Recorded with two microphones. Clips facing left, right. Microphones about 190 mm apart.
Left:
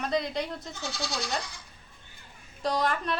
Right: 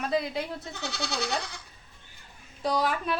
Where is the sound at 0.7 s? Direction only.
65° right (ahead or behind).